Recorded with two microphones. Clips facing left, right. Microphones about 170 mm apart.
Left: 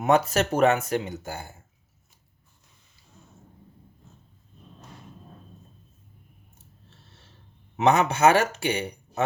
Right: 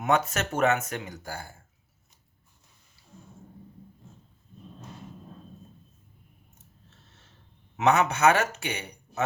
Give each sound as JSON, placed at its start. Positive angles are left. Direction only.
{"t": 0.0, "sound": "speech", "side_deg": 35}
{"t": 7.8, "sound": "speech", "side_deg": 30}